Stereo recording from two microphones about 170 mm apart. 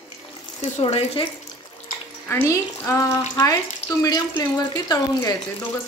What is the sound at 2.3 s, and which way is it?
Speech, 15° left (ahead or behind).